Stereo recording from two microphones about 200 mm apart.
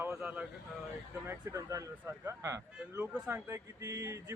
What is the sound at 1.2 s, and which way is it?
Speech, 15° right (ahead or behind).